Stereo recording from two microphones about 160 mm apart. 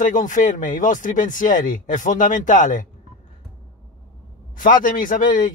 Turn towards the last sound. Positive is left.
turn(degrees=55)  # may be behind; listen again after turning